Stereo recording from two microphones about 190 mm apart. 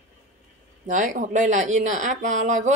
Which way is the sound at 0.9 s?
40° right (ahead or behind).